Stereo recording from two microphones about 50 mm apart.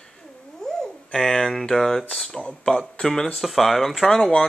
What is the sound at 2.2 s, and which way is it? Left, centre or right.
Speech, centre.